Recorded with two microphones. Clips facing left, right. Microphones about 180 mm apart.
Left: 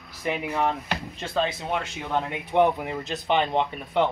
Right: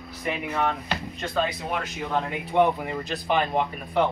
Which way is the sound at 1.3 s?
25° left (ahead or behind).